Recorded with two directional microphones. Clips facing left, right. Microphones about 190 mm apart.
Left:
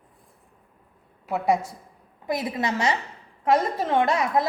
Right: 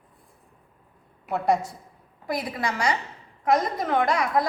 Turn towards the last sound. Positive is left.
turn(degrees=25)  # may be behind; listen again after turning